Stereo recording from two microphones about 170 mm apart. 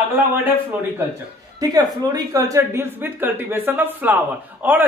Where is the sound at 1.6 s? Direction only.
20° right (ahead or behind).